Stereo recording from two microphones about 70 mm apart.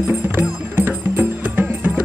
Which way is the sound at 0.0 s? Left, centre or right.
Right.